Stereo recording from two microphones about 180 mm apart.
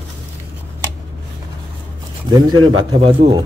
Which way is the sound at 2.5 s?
25° right (ahead or behind).